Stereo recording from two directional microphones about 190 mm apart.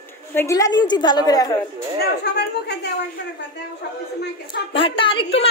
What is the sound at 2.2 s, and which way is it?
A woman's voice, 60° left (ahead or behind).